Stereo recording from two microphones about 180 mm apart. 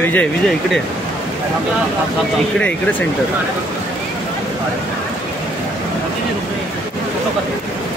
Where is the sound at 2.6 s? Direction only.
10° left (ahead or behind).